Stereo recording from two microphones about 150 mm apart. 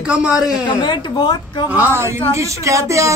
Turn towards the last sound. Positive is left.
turn(degrees=-20)  # may be behind; listen again after turning